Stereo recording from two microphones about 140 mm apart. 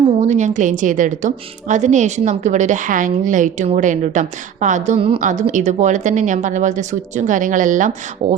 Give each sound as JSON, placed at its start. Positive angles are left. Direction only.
{"t": 0.2, "sound": "a woman's voice", "side_deg": -55}
{"t": 4.9, "sound": "a woman's voice", "side_deg": -40}
{"t": 5.2, "sound": "a woman's voice", "side_deg": -60}